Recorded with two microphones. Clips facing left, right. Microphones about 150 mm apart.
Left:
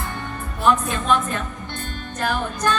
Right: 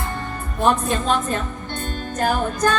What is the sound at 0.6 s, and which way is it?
A woman's voice, 35° right (ahead or behind).